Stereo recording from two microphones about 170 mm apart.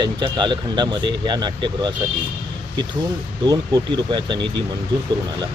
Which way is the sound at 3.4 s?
25° right (ahead or behind).